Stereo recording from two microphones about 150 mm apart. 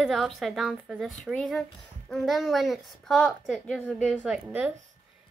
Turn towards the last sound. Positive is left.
turn(degrees=-10)  # may be behind; listen again after turning